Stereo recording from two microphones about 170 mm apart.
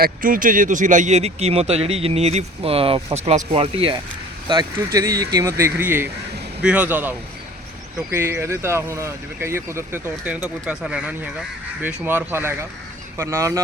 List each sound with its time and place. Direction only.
0.0 s speech: 55° right (ahead or behind); by 3.9 s 35° right (ahead or behind)
4.4 s speech: 25° right (ahead or behind)
8.1 s speech: 15° right (ahead or behind)